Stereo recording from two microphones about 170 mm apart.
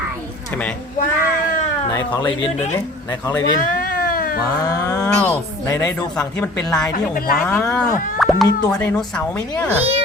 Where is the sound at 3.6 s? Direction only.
60° left (ahead or behind).